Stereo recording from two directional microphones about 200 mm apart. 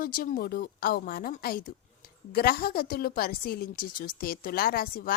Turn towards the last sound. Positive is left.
turn(degrees=50)  # may be behind; listen again after turning